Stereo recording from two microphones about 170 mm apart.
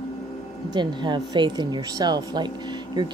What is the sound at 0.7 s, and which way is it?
Speech, 25° right (ahead or behind).